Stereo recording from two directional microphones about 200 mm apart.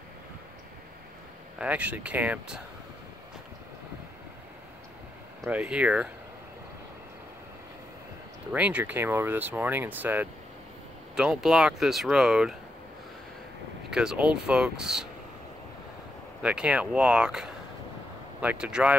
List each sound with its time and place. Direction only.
1.6 s speech: 5° right (ahead or behind)
5.4 s speech: 5° right (ahead or behind)
8.5 s speech: 5° right (ahead or behind)
13.8 s speech: 5° right (ahead or behind)
16.4 s speech: 5° right (ahead or behind)